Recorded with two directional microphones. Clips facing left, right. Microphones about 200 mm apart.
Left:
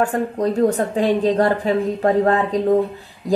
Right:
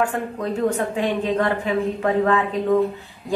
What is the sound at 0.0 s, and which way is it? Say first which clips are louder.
A woman's voice: left 4 dB; 40° left (ahead or behind).